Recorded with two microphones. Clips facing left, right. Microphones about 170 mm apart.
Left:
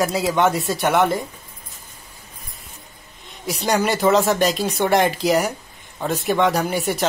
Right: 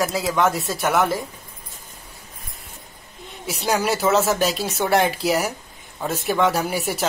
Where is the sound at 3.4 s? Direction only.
5° right (ahead or behind).